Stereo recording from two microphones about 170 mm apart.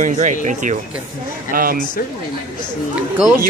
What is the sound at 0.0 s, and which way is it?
Speech, 50° right (ahead or behind).